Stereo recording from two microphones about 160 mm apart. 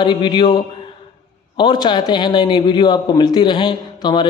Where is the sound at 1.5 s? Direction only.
30° left (ahead or behind).